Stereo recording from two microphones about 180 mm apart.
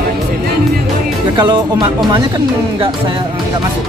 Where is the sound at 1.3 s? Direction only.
25° right (ahead or behind).